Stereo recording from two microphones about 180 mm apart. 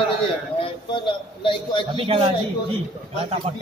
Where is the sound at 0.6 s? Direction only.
25° left (ahead or behind).